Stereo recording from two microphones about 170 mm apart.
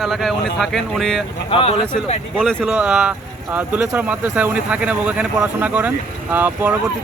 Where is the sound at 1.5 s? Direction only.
35° left (ahead or behind).